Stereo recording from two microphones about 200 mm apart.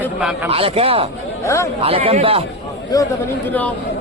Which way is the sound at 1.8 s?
30° right (ahead or behind).